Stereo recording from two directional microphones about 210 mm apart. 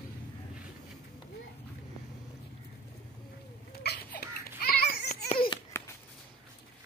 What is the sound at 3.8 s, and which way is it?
Babbling, 50° left (ahead or behind).